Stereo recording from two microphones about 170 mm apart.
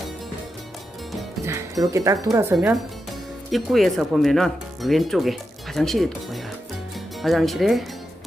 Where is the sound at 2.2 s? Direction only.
15° right (ahead or behind).